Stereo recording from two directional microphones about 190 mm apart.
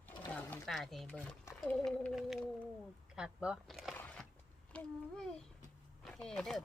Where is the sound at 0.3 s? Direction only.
10° left (ahead or behind).